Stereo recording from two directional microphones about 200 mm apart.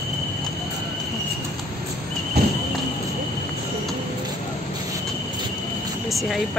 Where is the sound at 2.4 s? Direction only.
55° right (ahead or behind).